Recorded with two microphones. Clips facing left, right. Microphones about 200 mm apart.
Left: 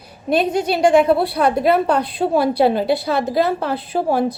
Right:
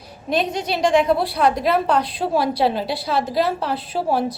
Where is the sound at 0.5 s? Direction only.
50° left (ahead or behind).